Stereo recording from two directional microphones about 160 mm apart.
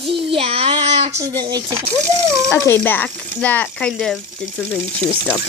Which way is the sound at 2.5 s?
10° left (ahead or behind).